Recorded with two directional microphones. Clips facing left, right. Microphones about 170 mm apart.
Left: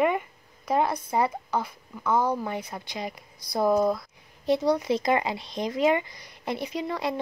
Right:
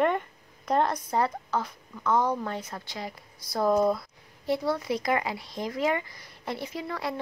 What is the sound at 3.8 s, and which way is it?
Speech, centre (ahead or behind).